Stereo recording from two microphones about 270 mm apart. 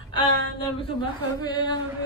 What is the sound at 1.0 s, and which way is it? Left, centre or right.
Speech, centre.